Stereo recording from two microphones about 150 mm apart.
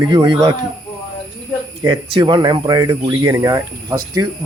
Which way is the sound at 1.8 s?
30° right (ahead or behind).